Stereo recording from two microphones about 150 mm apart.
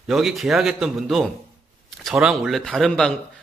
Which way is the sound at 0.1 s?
Centre (ahead or behind).